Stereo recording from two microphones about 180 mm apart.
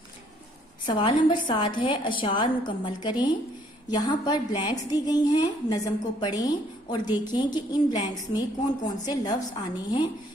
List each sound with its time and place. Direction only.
0.9 s a woman's voice: 25° left (ahead or behind)